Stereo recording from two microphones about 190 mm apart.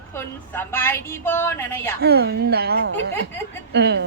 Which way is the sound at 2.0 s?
55° right (ahead or behind).